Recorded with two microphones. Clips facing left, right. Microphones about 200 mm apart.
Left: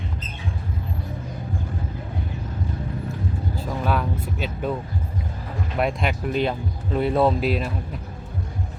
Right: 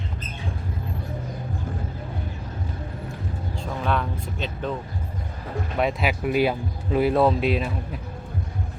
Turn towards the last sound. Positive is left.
turn(degrees=0)  # may be behind; listen again after turning